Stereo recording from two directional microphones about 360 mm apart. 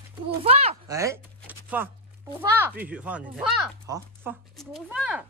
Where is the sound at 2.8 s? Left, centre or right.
Centre.